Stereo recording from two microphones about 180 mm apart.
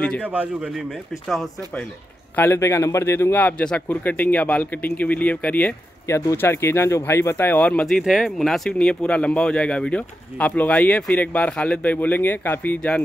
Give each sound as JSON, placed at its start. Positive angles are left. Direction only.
{"t": 0.2, "sound": "speech", "side_deg": -10}
{"t": 2.3, "sound": "a man's voice", "side_deg": 10}